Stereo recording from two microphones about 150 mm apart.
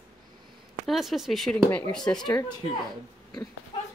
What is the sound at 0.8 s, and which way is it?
Speech, centre (ahead or behind).